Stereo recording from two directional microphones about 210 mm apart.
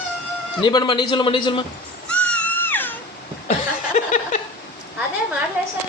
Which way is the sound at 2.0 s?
5° left (ahead or behind).